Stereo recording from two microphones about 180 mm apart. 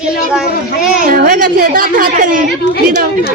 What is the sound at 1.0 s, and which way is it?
A woman's voice, 55° right (ahead or behind).